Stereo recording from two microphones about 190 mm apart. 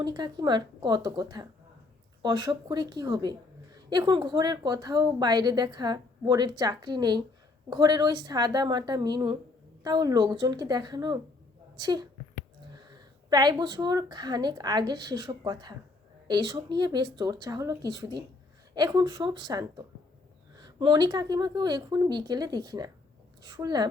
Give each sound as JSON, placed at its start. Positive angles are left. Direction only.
{"t": 0.0, "sound": "a woman's voice", "side_deg": -20}
{"t": 13.3, "sound": "a woman's voice", "side_deg": -20}